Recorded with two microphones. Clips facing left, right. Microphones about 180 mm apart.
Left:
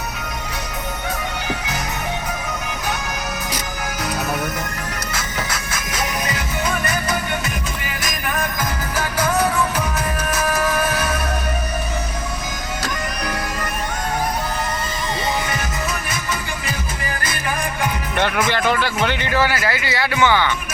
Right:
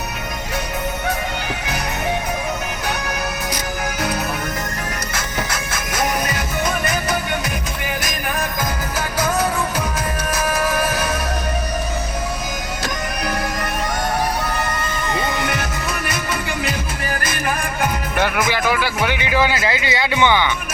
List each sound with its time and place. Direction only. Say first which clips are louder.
15.4 s music: right 2 dB; 65° right (ahead or behind)
18.2 s a man's voice: even; 10° right (ahead or behind)